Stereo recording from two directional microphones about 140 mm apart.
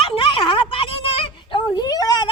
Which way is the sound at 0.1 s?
40° left (ahead or behind).